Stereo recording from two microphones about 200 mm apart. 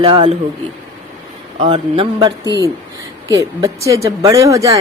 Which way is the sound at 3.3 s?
15° right (ahead or behind).